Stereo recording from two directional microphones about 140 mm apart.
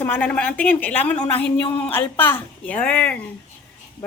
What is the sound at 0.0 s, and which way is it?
A woman's voice, 10° left (ahead or behind).